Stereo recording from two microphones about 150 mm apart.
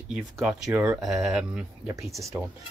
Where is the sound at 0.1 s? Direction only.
Centre (ahead or behind).